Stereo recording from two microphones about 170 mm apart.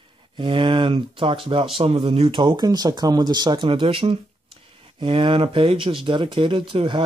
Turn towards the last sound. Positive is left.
turn(degrees=-30)  # may be behind; listen again after turning